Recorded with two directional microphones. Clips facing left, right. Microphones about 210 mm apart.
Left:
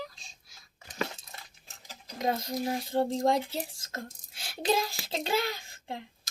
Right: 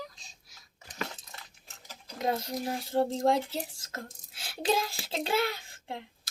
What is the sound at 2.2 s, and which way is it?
Speech, centre (ahead or behind).